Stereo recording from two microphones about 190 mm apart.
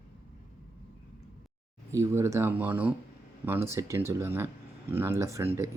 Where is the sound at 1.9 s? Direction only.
15° right (ahead or behind).